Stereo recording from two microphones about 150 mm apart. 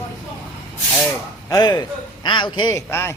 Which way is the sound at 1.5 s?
25° left (ahead or behind).